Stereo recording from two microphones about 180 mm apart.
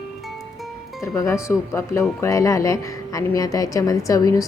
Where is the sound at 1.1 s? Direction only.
15° left (ahead or behind).